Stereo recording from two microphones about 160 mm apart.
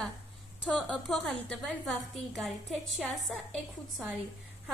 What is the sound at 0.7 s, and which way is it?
A woman's voice, 5° left (ahead or behind).